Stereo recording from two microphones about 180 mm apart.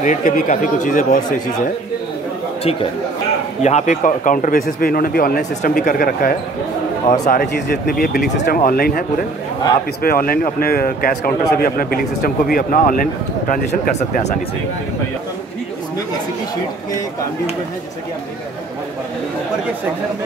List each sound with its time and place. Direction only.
0.0 s a man's voice: 45° left (ahead or behind)
3.6 s a man's voice: 40° left (ahead or behind)
10.0 s a man's voice: 55° left (ahead or behind)